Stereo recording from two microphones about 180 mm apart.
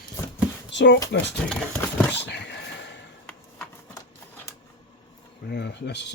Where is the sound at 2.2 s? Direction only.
75° left (ahead or behind).